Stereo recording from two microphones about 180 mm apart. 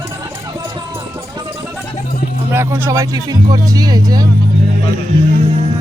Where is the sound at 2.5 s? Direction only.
15° right (ahead or behind).